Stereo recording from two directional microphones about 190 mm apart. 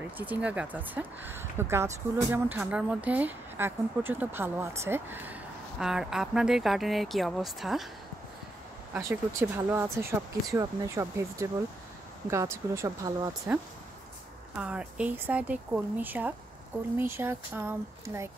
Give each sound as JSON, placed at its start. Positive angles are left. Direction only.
{"t": 0.2, "sound": "speech", "side_deg": -10}
{"t": 9.0, "sound": "speech", "side_deg": -15}
{"t": 14.5, "sound": "speech", "side_deg": -5}